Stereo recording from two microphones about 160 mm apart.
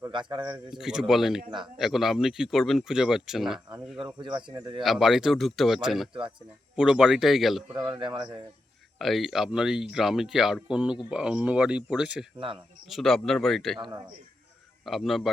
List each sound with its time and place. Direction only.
0.1 s speech: 30° right (ahead or behind)
0.7 s speech: 5° right (ahead or behind)
3.9 s speech: 30° right (ahead or behind)
4.8 s speech: centre (ahead or behind)
7.7 s speech: 30° right (ahead or behind)
9.0 s speech: centre (ahead or behind)
13.7 s speech: 30° right (ahead or behind)
14.8 s speech: centre (ahead or behind)